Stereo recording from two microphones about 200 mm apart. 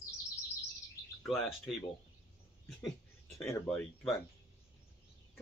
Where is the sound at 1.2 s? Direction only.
Centre (ahead or behind).